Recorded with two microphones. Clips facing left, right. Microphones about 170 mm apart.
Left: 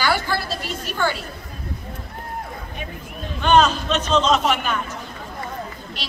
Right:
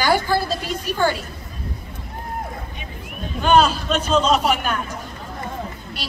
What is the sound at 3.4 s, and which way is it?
A woman's voice, 10° right (ahead or behind).